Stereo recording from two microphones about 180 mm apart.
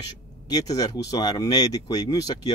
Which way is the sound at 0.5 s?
20° left (ahead or behind).